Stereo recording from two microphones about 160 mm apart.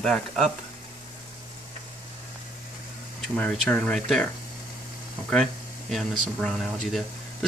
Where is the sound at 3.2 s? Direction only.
5° left (ahead or behind).